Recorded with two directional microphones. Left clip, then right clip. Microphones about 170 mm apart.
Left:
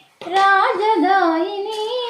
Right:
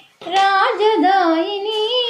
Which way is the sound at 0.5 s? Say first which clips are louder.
Right 1 dB; 45° right (ahead or behind).